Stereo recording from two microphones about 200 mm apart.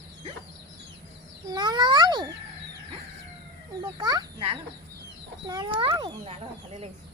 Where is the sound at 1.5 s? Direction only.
20° right (ahead or behind).